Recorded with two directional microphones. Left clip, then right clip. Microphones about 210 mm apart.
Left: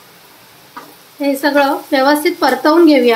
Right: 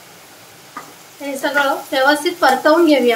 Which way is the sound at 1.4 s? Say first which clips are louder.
Left 2 dB; 35° left (ahead or behind).